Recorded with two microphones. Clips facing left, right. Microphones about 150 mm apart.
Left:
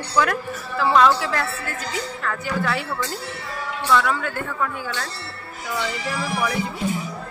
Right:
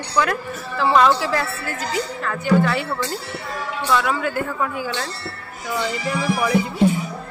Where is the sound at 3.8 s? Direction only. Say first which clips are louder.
Even; 10° right (ahead or behind).